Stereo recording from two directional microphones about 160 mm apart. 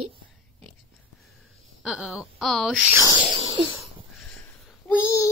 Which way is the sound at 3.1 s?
35° right (ahead or behind).